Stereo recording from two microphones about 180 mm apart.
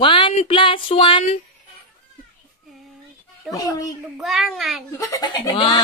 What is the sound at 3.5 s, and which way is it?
Speech, 20° left (ahead or behind).